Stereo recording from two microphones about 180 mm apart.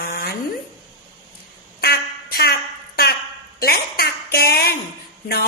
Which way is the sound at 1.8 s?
60° left (ahead or behind).